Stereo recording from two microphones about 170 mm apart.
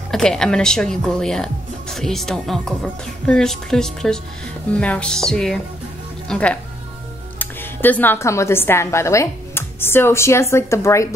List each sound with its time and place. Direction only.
0.1 s speech: 5° left (ahead or behind)